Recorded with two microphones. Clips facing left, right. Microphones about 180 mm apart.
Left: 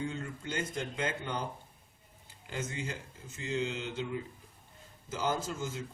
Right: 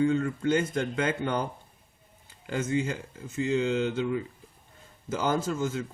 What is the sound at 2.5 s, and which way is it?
Speech, 70° right (ahead or behind).